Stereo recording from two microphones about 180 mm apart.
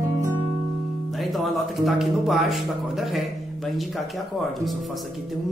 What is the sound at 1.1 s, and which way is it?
Speech, centre (ahead or behind).